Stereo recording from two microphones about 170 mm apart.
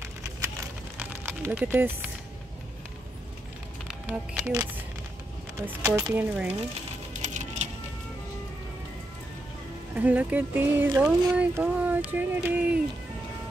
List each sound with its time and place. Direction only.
0.0 s a sound: 15° right (ahead or behind)
3.8 s music: 5° right (ahead or behind)
5.7 s speech: 15° right (ahead or behind)
7.3 s coin: 40° right (ahead or behind)
9.9 s speech: 10° right (ahead or behind)